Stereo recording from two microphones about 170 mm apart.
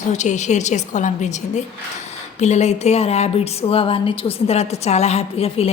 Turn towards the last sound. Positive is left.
turn(degrees=35)  # may be behind; listen again after turning